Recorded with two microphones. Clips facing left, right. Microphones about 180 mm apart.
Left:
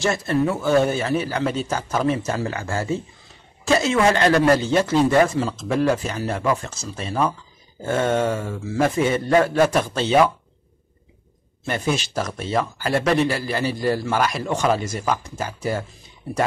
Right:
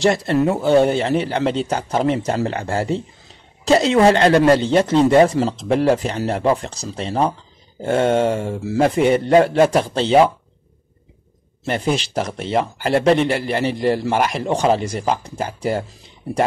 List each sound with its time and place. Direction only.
0.0 s a man's voice: 35° right (ahead or behind)
11.6 s a man's voice: 30° right (ahead or behind)